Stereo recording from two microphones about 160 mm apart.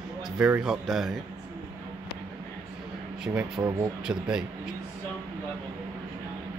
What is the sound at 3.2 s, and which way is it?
Speech, 5° right (ahead or behind).